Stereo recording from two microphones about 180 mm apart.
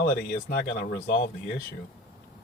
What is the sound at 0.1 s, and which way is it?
Speech, 60° left (ahead or behind).